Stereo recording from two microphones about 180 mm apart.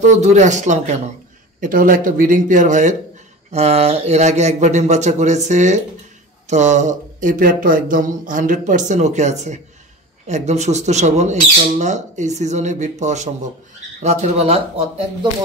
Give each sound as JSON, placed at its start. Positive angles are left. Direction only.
{"t": 0.0, "sound": "a man's voice", "side_deg": -40}